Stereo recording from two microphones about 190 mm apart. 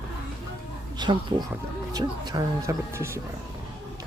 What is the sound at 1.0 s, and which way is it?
Speech, 25° right (ahead or behind).